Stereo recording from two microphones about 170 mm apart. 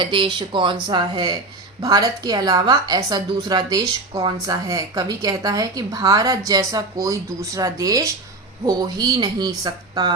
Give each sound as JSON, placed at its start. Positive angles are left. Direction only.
{"t": 0.0, "sound": "a woman's voice", "side_deg": -30}